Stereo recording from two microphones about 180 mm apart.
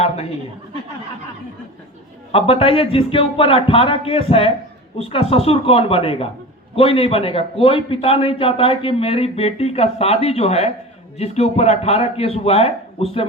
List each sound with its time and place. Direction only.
2.3 s a man's voice: 30° left (ahead or behind)